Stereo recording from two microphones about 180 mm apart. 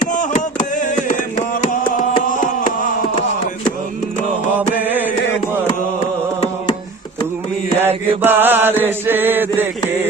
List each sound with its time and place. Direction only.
0.0 s a sound: 45° left (ahead or behind)
4.5 s mantra: 10° right (ahead or behind)
7.8 s chant: 10° right (ahead or behind)